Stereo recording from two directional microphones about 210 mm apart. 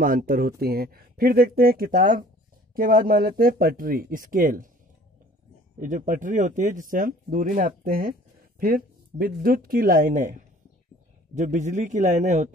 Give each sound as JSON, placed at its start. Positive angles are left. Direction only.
{"t": 0.0, "sound": "speech", "side_deg": -45}
{"t": 5.8, "sound": "speech", "side_deg": -40}